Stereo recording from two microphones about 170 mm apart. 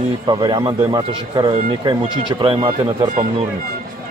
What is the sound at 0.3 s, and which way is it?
Speech, 30° right (ahead or behind).